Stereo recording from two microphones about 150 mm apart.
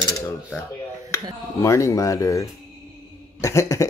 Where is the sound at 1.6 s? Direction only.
20° left (ahead or behind).